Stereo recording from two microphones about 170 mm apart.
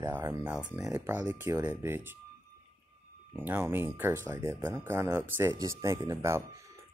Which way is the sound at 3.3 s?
10° right (ahead or behind).